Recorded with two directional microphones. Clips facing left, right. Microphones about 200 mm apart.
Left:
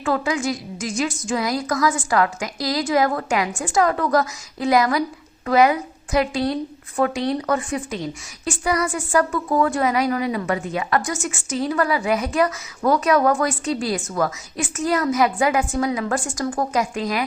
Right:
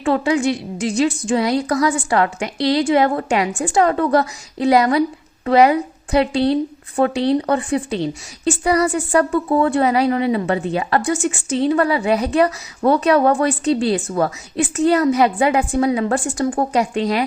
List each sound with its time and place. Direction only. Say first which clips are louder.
0.0 s a woman's voice: right 5 dB; 30° right (ahead or behind)